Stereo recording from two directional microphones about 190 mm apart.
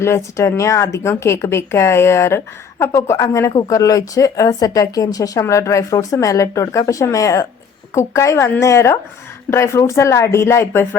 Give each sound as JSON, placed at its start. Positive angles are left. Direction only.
{"t": 0.0, "sound": "speech", "side_deg": 15}